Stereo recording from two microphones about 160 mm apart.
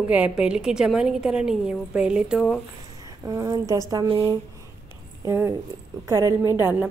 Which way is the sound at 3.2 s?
20° right (ahead or behind).